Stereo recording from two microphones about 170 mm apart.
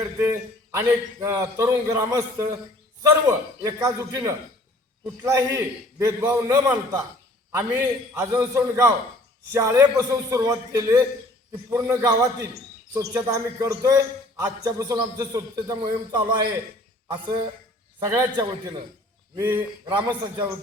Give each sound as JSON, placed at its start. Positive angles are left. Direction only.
{"t": 0.0, "sound": "a man's voice", "side_deg": -15}
{"t": 18.0, "sound": "a man's voice", "side_deg": -25}
{"t": 19.9, "sound": "a man's voice", "side_deg": -25}